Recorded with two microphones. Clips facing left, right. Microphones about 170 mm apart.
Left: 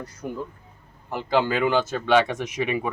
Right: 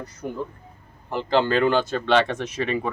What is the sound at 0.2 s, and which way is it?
Speech, centre (ahead or behind).